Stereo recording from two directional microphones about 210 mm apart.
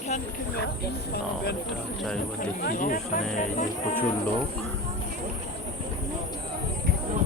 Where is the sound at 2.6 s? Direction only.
45° left (ahead or behind).